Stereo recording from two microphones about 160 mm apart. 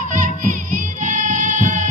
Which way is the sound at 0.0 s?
55° right (ahead or behind).